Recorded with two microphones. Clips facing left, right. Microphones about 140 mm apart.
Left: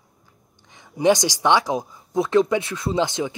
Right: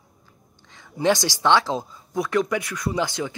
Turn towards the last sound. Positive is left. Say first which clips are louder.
# left 3 dB
turn(degrees=20)  # may be behind; listen again after turning